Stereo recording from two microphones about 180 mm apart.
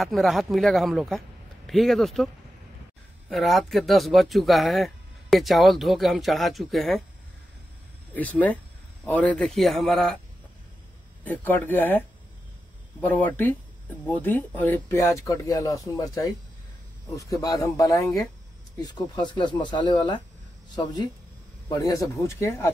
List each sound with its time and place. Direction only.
0.0 s speech: centre (ahead or behind)
3.3 s speech: centre (ahead or behind)
8.1 s speech: 10° left (ahead or behind)
11.2 s speech: 10° left (ahead or behind)
13.0 s speech: 10° left (ahead or behind)